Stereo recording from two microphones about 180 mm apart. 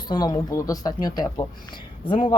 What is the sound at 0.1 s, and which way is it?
Speech, 20° left (ahead or behind).